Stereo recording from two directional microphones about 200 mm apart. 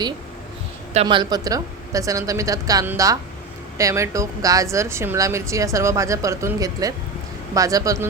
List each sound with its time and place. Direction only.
1.0 s a woman's voice: 20° right (ahead or behind)